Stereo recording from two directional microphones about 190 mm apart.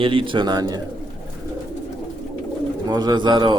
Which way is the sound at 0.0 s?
25° right (ahead or behind).